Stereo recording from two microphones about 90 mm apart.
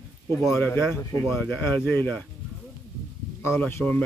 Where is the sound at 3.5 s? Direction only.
25° left (ahead or behind).